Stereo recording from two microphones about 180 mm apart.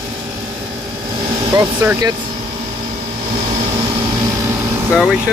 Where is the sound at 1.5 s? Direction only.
15° right (ahead or behind).